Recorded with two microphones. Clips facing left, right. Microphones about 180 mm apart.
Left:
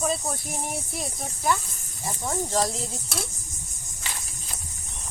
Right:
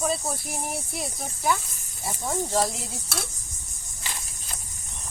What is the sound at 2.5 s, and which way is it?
Speech, 15° right (ahead or behind).